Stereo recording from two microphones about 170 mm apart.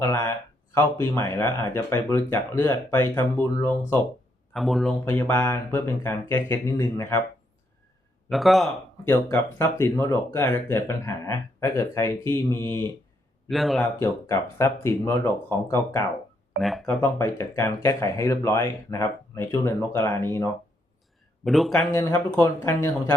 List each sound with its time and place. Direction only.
0.0 s speech: 20° left (ahead or behind)
4.5 s speech: centre (ahead or behind)
5.0 s speech: 15° left (ahead or behind)
8.3 s speech: centre (ahead or behind)
9.0 s speech: 15° left (ahead or behind)
13.5 s speech: centre (ahead or behind)
14.0 s speech: 15° left (ahead or behind)
16.6 s speech: centre (ahead or behind)
17.0 s speech: 15° left (ahead or behind)
21.4 s speech: centre (ahead or behind)
21.9 s speech: 15° left (ahead or behind)